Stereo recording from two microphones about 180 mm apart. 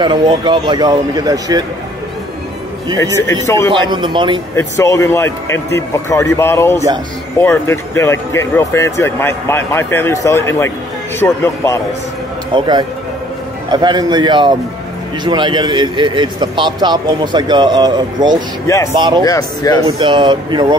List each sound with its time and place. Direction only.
0.0 s a man's voice: 25° right (ahead or behind)
3.0 s speech: 15° left (ahead or behind)
3.7 s a man's voice: 25° right (ahead or behind)
4.6 s speech: 15° left (ahead or behind)
12.5 s a man's voice: 25° right (ahead or behind)
19.2 s speech: 20° left (ahead or behind)
20.0 s a man's voice: 25° right (ahead or behind)